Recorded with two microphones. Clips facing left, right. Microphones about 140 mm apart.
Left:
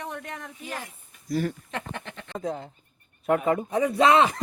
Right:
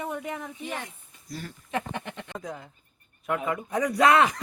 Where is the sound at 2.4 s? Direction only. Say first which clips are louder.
Left 7 dB; 30° left (ahead or behind).